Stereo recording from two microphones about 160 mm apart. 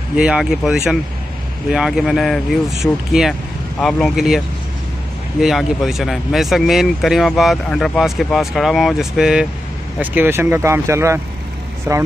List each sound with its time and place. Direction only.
0.1 s speech: 5° right (ahead or behind)
5.4 s speech: centre (ahead or behind); by 12.0 s 20° right (ahead or behind)